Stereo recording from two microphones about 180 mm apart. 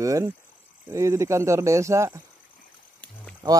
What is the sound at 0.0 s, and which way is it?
Speech, 15° right (ahead or behind).